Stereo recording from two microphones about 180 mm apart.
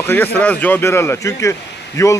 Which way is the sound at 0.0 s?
10° left (ahead or behind).